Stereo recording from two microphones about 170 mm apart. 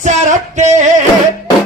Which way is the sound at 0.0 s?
45° right (ahead or behind).